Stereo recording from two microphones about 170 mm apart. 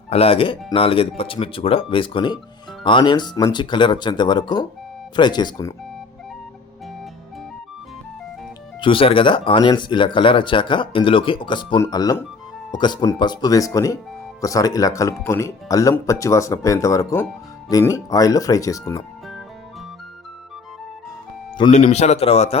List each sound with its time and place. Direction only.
0.1 s speech: 35° left (ahead or behind)
8.8 s speech: 30° left (ahead or behind)
21.7 s speech: 40° left (ahead or behind)